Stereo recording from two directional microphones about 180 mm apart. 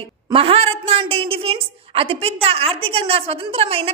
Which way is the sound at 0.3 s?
30° right (ahead or behind).